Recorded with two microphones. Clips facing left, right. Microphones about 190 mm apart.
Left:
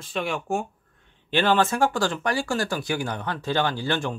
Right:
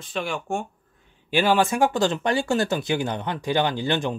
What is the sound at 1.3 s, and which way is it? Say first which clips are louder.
Speech: right 1 dB; 10° right (ahead or behind).